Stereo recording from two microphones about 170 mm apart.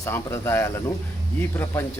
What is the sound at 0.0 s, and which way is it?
Speech, 15° left (ahead or behind).